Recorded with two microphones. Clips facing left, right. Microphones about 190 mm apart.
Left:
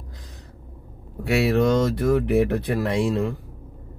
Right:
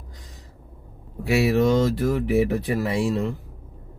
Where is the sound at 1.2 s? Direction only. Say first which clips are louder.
Even; centre (ahead or behind).